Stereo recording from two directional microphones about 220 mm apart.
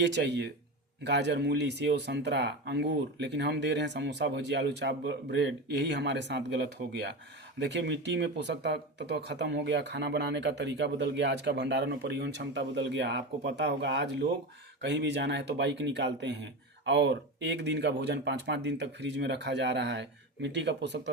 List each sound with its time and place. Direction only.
0.0 s speech: 50° right (ahead or behind)
7.6 s speech: 50° right (ahead or behind)